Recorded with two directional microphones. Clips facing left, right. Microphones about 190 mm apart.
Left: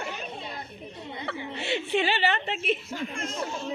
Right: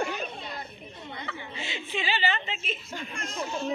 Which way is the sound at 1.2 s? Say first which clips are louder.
Left 11 dB; 65° left (ahead or behind).